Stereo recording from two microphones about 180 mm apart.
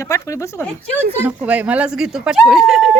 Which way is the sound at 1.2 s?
10° right (ahead or behind).